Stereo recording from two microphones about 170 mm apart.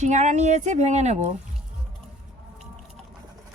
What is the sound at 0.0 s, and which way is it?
Speech, 45° right (ahead or behind).